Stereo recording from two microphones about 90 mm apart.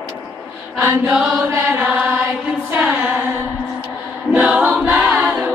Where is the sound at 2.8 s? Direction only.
15° right (ahead or behind).